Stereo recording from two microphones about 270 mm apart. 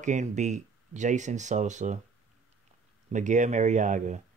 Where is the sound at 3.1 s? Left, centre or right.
Right.